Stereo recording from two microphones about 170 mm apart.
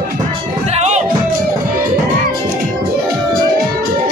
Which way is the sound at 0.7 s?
40° right (ahead or behind).